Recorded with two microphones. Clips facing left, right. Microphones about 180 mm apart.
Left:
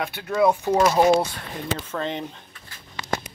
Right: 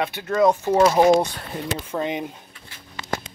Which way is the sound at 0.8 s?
15° right (ahead or behind).